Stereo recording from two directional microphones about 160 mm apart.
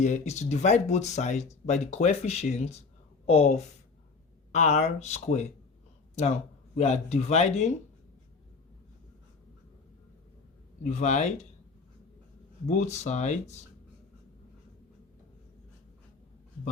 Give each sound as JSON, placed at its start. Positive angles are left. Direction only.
{"t": 0.0, "sound": "speech", "side_deg": 45}
{"t": 6.7, "sound": "speech", "side_deg": 45}
{"t": 10.8, "sound": "speech", "side_deg": 50}
{"t": 12.6, "sound": "speech", "side_deg": 45}